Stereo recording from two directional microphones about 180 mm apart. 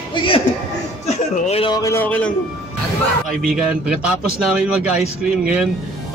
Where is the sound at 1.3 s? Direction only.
35° left (ahead or behind).